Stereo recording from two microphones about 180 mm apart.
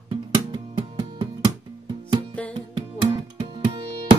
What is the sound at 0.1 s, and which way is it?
Music, 30° right (ahead or behind).